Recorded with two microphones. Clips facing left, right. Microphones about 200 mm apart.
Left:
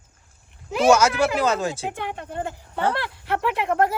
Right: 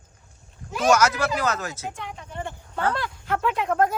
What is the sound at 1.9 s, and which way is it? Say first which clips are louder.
Speech: left 6 dB; 65° left (ahead or behind).